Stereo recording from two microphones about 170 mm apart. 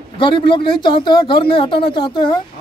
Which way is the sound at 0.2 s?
30° left (ahead or behind).